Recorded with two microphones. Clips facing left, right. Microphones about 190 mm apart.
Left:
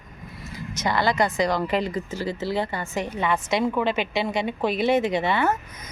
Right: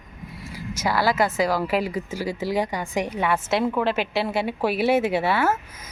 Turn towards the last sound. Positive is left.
turn(degrees=-5)  # may be behind; listen again after turning